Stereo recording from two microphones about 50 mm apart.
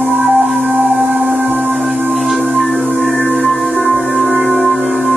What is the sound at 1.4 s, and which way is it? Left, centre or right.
Music, right.